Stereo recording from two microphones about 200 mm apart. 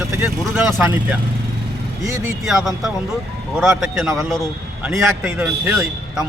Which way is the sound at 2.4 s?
Centre (ahead or behind).